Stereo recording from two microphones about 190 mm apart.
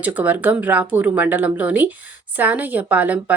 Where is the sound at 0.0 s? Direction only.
10° right (ahead or behind).